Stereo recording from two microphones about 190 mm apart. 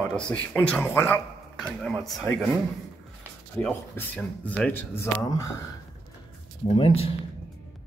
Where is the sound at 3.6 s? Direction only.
10° left (ahead or behind).